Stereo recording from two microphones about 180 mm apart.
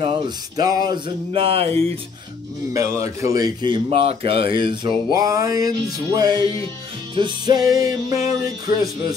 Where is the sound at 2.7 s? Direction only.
15° right (ahead or behind).